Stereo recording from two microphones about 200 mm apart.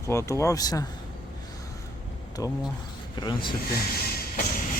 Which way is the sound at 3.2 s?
25° left (ahead or behind).